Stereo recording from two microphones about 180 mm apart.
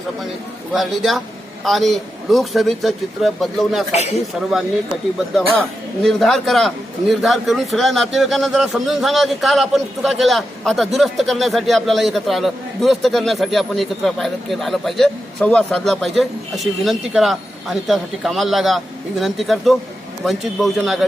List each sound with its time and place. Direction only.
0.7 s a man's voice: centre (ahead or behind)
3.9 s speech: 35° left (ahead or behind)
5.4 s a man's voice: centre (ahead or behind)